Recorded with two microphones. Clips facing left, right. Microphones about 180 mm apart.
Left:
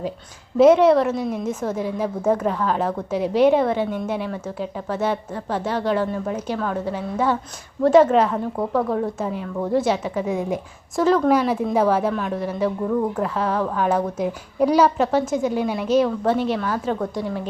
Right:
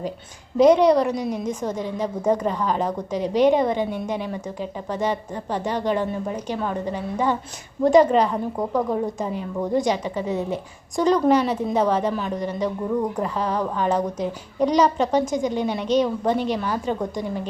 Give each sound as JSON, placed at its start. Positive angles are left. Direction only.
{"t": 0.5, "sound": "a woman's voice", "side_deg": 5}
{"t": 5.6, "sound": "speech", "side_deg": -15}
{"t": 6.2, "sound": "a woman's voice", "side_deg": 5}
{"t": 8.7, "sound": "speech", "side_deg": -15}
{"t": 9.0, "sound": "a woman's voice", "side_deg": 5}
{"t": 16.6, "sound": "a woman's voice", "side_deg": -10}